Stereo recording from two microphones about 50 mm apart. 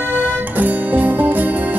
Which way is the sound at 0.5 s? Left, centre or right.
Right.